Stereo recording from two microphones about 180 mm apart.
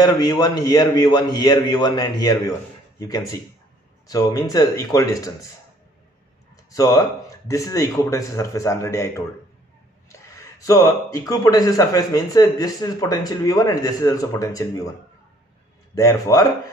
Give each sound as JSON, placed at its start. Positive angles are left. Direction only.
{"t": 0.0, "sound": "speech", "side_deg": 25}
{"t": 6.7, "sound": "speech", "side_deg": 20}
{"t": 15.9, "sound": "speech", "side_deg": 20}